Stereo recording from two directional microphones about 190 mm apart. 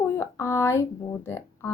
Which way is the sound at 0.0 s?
15° left (ahead or behind).